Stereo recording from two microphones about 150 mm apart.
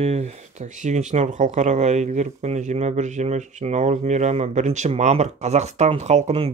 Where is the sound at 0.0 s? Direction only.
45° right (ahead or behind).